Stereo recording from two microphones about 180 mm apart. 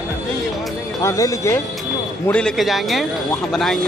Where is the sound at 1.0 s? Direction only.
20° left (ahead or behind).